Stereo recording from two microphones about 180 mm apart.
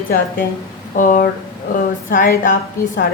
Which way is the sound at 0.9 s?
50° left (ahead or behind).